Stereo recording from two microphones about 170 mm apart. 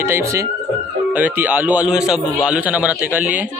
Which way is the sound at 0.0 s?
15° right (ahead or behind).